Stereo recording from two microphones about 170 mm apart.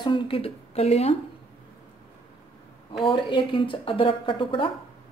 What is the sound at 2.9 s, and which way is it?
A woman's voice, 30° left (ahead or behind).